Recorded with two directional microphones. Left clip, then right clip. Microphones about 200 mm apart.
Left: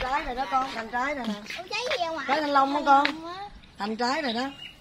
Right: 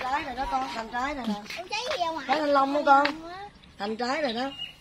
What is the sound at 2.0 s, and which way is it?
Speech, 50° left (ahead or behind).